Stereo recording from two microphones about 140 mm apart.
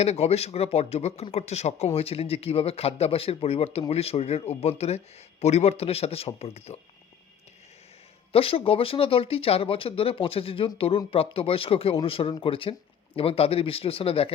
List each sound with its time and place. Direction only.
0.0 s speech: 50° left (ahead or behind)
8.3 s speech: 45° left (ahead or behind)